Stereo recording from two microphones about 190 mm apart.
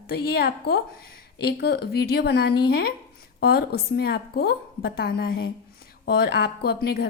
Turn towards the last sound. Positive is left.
turn(degrees=55)  # may be behind; listen again after turning